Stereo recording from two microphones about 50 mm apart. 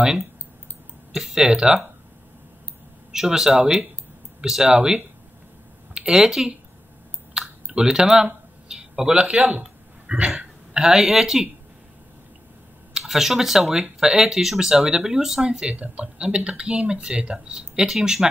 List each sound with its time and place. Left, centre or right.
1.1 s speech: centre
3.1 s speech: centre
7.3 s typing: centre
8.6 s a sound: centre
9.1 s speech: centre
10.0 s a sound: right
10.3 s speech: centre
12.9 s speech: centre